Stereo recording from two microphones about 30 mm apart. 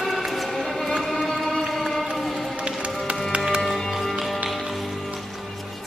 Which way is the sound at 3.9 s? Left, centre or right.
Centre.